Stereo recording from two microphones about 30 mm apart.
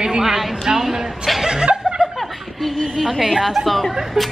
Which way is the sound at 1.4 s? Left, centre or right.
Right.